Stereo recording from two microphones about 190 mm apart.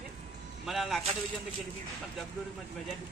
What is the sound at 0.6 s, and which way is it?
Speech, centre (ahead or behind).